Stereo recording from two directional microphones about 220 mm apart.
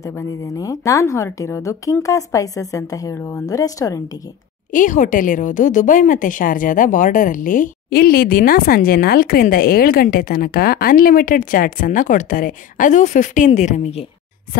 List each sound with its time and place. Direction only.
0.0 s a woman's voice: 10° left (ahead or behind)
4.7 s a woman's voice: 35° left (ahead or behind)